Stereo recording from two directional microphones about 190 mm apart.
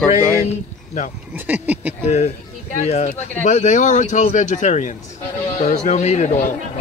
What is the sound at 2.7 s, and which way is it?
Speech, 35° left (ahead or behind).